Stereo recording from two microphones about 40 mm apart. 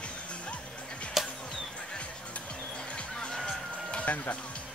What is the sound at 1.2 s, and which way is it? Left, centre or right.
Music, centre.